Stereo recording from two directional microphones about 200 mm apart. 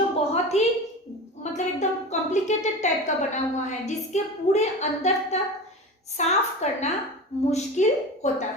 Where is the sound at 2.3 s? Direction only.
35° left (ahead or behind).